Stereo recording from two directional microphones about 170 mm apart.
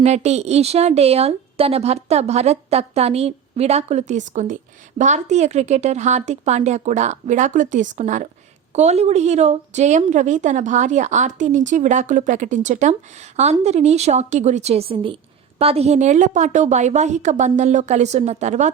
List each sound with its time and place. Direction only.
0.0 s a woman's voice: 40° right (ahead or behind)